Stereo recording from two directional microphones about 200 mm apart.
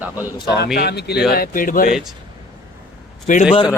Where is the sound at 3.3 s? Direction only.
40° left (ahead or behind).